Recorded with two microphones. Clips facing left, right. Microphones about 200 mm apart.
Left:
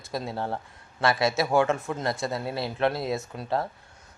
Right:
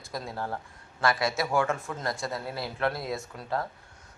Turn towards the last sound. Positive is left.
turn(degrees=25)  # may be behind; listen again after turning